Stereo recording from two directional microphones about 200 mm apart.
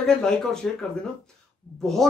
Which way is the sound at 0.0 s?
5° left (ahead or behind).